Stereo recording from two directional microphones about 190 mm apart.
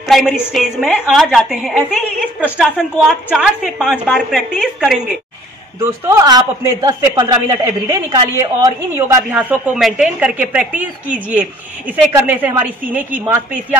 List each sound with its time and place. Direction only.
0.1 s a woman's voice: centre (ahead or behind)
5.8 s a man's voice: 15° right (ahead or behind)